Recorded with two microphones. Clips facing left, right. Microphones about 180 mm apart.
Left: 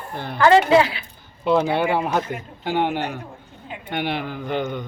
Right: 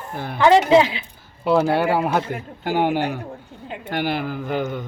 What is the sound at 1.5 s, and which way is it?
A man's voice, 5° right (ahead or behind).